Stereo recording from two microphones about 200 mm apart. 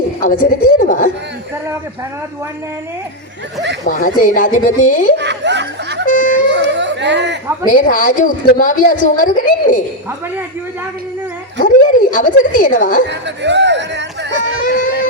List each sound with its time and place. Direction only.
0.2 s speech: 40° left (ahead or behind)
3.8 s a woman's voice: 40° left (ahead or behind)
5.1 s speech: 60° right (ahead or behind)
6.1 s music: 40° left (ahead or behind)
6.5 s a sound: 60° right (ahead or behind)
7.7 s a woman's voice: 45° left (ahead or behind)
11.6 s a woman's voice: 45° left (ahead or behind)
13.1 s speech: 60° right (ahead or behind)
14.4 s a sound: 45° left (ahead or behind)